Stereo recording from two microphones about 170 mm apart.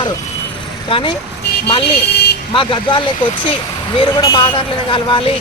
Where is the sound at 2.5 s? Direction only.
30° left (ahead or behind).